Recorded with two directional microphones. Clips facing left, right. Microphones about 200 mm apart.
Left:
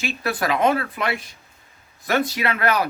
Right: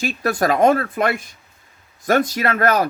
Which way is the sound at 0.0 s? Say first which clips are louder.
Right 5 dB; 45° right (ahead or behind).